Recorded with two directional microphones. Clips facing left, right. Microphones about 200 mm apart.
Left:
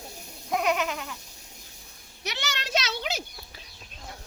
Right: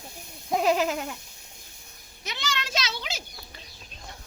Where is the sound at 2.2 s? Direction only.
70° left (ahead or behind).